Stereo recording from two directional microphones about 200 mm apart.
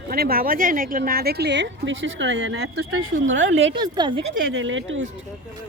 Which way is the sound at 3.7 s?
20° right (ahead or behind).